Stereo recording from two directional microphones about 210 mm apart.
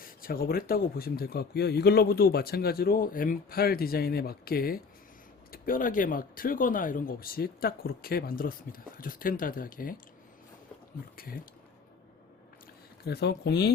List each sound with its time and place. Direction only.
0.0 s speech: 45° left (ahead or behind)
13.1 s speech: 50° left (ahead or behind)